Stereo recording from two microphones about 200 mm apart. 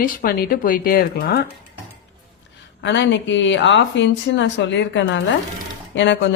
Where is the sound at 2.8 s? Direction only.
60° left (ahead or behind).